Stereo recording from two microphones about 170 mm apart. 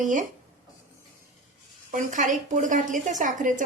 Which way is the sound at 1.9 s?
50° right (ahead or behind).